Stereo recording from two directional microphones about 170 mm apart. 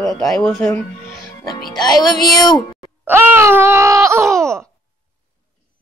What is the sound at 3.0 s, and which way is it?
Wail, 10° right (ahead or behind).